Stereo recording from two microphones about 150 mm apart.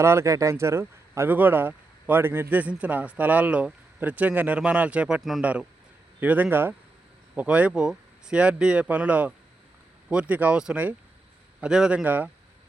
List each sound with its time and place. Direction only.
0.0 s speech: 15° right (ahead or behind)